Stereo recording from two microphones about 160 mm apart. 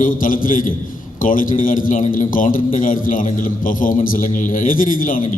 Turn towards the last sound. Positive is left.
turn(degrees=60)  # may be behind; listen again after turning